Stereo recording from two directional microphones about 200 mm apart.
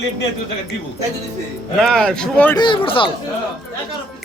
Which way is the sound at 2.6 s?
25° left (ahead or behind).